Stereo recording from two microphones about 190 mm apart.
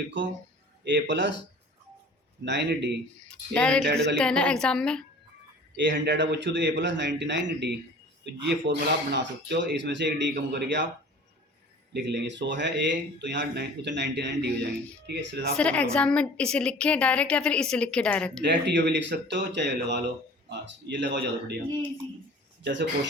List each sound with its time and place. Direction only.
0.9 s a man's voice: 70° right (ahead or behind)
2.4 s speech: 65° right (ahead or behind)
3.5 s a woman's voice: 5° left (ahead or behind)
5.7 s a man's voice: 65° right (ahead or behind)
11.9 s speech: 65° right (ahead or behind)
15.5 s a woman's voice: 5° left (ahead or behind)
18.4 s a man's voice: 65° right (ahead or behind)
22.6 s speech: 65° right (ahead or behind)